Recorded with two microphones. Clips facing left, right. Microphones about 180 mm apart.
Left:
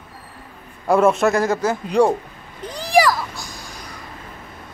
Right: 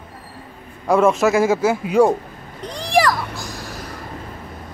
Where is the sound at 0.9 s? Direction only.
Centre (ahead or behind).